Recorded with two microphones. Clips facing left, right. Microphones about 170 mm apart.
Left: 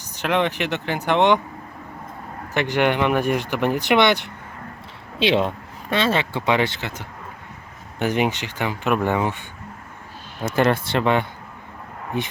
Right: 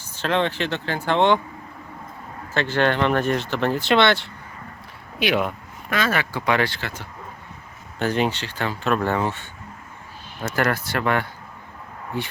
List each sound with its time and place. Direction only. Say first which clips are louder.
0.0 s speech: left 1 dB; 15° left (ahead or behind)
2.5 s speech: left 1 dB; 15° left (ahead or behind)